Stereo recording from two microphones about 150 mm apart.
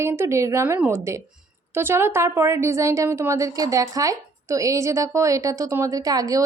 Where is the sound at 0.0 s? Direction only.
20° right (ahead or behind).